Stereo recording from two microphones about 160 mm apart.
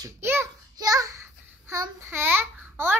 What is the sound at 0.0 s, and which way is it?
Child singing, 15° right (ahead or behind).